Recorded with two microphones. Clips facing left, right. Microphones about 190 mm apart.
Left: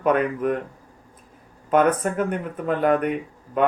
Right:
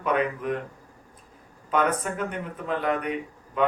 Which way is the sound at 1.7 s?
50° left (ahead or behind).